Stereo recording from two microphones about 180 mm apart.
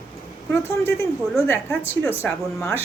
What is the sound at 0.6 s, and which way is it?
A woman's voice, 15° left (ahead or behind).